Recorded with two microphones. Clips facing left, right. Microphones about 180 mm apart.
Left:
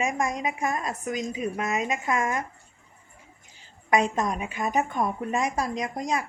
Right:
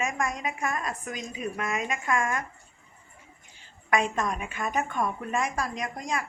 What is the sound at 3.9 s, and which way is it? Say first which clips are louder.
A woman's voice: left 3 dB; 20° left (ahead or behind).